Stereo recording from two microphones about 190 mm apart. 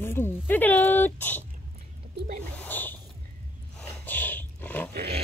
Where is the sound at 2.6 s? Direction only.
10° left (ahead or behind).